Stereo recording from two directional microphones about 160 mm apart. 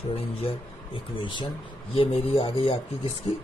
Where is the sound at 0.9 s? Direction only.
30° left (ahead or behind).